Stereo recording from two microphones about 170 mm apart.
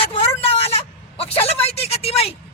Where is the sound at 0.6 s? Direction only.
35° left (ahead or behind).